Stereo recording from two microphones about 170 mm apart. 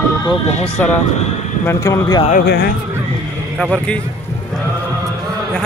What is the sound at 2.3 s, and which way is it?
Speech, 65° left (ahead or behind).